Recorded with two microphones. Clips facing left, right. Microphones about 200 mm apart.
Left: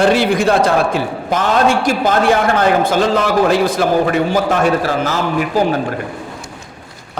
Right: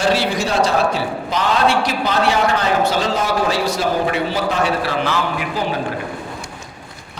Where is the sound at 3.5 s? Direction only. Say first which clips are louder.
Left 5 dB; 50° left (ahead or behind).